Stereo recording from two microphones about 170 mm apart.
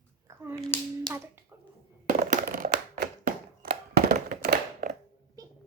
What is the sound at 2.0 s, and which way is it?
Crushing, 50° right (ahead or behind).